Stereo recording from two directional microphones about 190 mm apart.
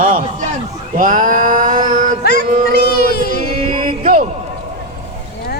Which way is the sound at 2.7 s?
55° left (ahead or behind).